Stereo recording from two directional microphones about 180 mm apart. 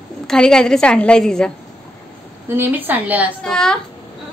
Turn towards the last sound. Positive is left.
turn(degrees=5)  # may be behind; listen again after turning